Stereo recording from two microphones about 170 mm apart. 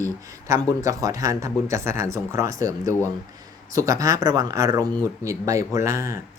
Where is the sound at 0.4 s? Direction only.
20° right (ahead or behind).